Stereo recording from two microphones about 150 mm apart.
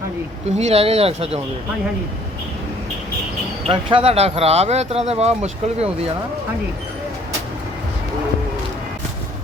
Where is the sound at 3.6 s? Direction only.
40° right (ahead or behind).